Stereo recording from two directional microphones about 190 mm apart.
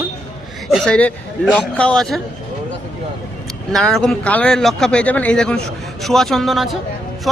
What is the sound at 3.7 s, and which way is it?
Speech, centre (ahead or behind).